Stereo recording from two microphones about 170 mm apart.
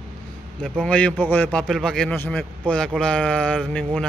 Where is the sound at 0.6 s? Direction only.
5° left (ahead or behind).